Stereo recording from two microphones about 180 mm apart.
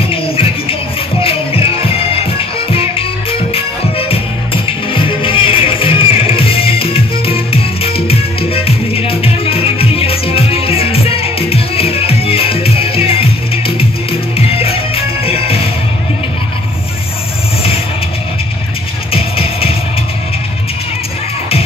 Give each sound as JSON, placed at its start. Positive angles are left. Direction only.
{"t": 0.1, "sound": "music", "side_deg": 30}
{"t": 4.9, "sound": "music", "side_deg": 30}
{"t": 19.1, "sound": "music", "side_deg": 30}